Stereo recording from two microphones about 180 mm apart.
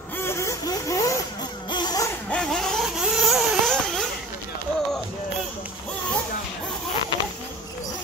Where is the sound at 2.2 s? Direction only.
5° left (ahead or behind).